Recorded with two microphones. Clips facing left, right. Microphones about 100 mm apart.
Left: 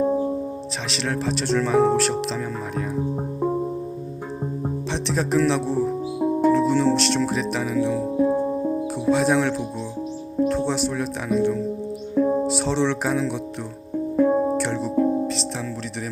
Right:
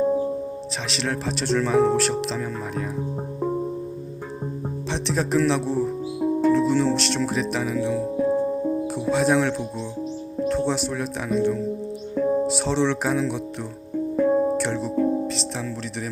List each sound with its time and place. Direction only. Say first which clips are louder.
0.9 s speech: left 2 dB; centre (ahead or behind)
4.9 s speech: right 1 dB; centre (ahead or behind)
6.1 s music: left 1 dB; 20° left (ahead or behind)
6.5 s speech: left 1 dB; centre (ahead or behind)
8.3 s music: even; 15° left (ahead or behind)
9.0 s speech: left 1 dB; centre (ahead or behind)
12.1 s music: left 2 dB; 10° left (ahead or behind)
12.5 s speech: even; centre (ahead or behind)
14.2 s music: left 1 dB; 10° left (ahead or behind)
14.6 s music: left 1 dB; centre (ahead or behind)
14.9 s music: left 2 dB; 10° left (ahead or behind)